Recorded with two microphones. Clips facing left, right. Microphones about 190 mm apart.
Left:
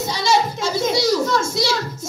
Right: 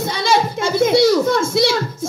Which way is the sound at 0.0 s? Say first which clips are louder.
Right 2 dB; 55° right (ahead or behind).